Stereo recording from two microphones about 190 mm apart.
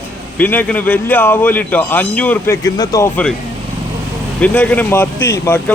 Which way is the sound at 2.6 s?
20° left (ahead or behind).